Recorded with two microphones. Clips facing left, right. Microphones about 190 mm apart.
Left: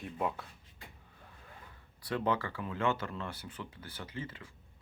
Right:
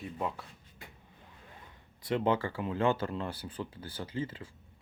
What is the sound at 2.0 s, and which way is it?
Speech, 25° right (ahead or behind).